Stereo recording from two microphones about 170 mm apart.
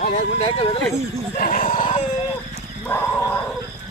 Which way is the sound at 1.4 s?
55° left (ahead or behind).